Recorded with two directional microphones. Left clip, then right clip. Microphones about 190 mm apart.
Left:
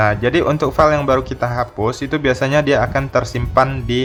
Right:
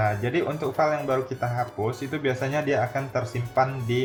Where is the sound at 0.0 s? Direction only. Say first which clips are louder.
Left 10 dB; 35° left (ahead or behind).